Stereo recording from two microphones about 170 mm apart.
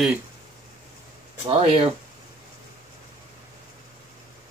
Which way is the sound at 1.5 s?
35° right (ahead or behind).